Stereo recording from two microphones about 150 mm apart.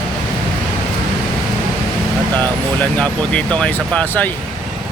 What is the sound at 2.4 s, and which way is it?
Speech, 10° left (ahead or behind).